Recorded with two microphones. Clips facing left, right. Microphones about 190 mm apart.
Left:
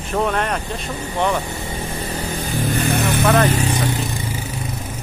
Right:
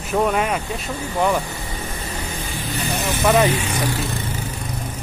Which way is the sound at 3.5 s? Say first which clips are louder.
Left 3 dB; 40° left (ahead or behind).